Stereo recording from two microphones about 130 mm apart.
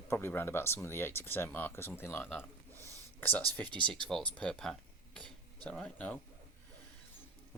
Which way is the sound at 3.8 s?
5° left (ahead or behind).